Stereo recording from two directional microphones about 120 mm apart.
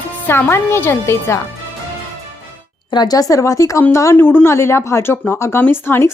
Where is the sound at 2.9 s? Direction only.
35° left (ahead or behind).